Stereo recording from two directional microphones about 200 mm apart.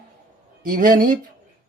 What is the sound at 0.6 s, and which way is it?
Speech, 40° right (ahead or behind).